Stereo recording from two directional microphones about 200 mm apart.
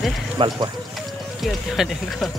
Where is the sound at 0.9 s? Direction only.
Centre (ahead or behind).